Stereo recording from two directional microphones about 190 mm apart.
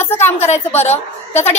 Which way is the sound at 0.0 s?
10° left (ahead or behind).